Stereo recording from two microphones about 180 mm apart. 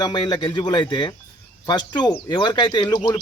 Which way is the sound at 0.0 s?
25° left (ahead or behind).